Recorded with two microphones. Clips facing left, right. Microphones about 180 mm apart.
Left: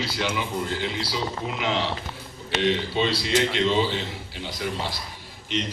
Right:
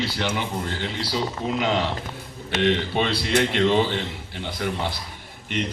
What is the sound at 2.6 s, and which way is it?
A man's voice, 55° right (ahead or behind).